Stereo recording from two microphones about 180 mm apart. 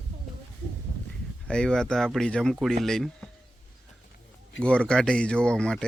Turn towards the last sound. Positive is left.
turn(degrees=5)  # may be behind; listen again after turning